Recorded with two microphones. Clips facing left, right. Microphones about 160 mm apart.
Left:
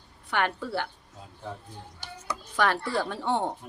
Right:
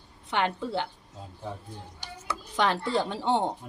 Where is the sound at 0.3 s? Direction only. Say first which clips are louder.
Even; 20° right (ahead or behind).